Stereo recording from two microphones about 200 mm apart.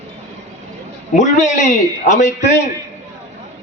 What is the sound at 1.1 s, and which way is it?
A man's voice, 35° left (ahead or behind).